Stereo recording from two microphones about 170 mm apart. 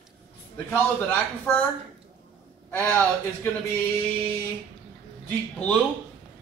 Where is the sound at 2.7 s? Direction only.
10° left (ahead or behind).